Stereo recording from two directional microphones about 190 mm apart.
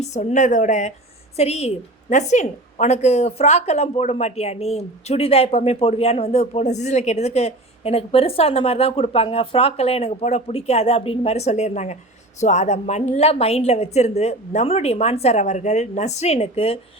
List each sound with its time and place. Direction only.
0.0 s a woman's voice: 35° left (ahead or behind)